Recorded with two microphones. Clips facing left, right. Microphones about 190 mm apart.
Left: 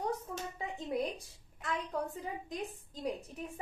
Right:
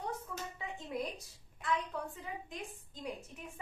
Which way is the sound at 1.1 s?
40° left (ahead or behind).